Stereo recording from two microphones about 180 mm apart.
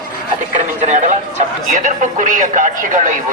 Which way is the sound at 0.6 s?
40° right (ahead or behind).